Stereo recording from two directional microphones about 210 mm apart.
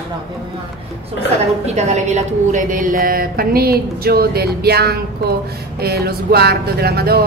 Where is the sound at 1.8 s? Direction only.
35° right (ahead or behind).